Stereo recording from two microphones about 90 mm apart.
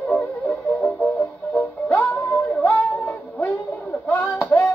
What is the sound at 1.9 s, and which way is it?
Music, 15° left (ahead or behind).